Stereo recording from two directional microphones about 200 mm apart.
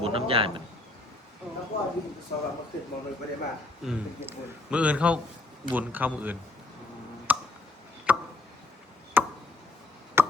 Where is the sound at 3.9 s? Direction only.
5° right (ahead or behind).